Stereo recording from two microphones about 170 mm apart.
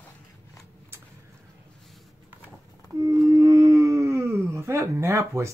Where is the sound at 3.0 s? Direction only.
20° right (ahead or behind).